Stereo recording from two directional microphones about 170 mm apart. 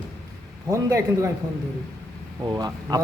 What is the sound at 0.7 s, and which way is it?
Speech, 20° right (ahead or behind).